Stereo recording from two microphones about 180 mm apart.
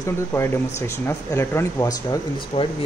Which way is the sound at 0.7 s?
15° left (ahead or behind).